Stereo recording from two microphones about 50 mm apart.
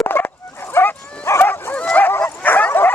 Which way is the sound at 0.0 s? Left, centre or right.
Left.